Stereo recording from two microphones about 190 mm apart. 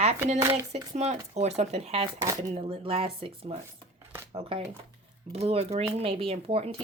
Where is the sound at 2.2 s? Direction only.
20° right (ahead or behind).